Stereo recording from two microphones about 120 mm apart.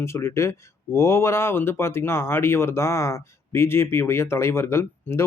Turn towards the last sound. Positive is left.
turn(degrees=20)  # may be behind; listen again after turning